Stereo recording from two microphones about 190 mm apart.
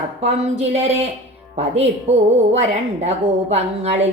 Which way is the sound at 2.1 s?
35° right (ahead or behind).